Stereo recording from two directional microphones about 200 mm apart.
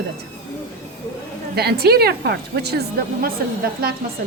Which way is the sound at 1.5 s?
50° right (ahead or behind).